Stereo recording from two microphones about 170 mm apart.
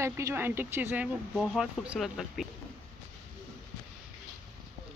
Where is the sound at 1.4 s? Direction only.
Centre (ahead or behind).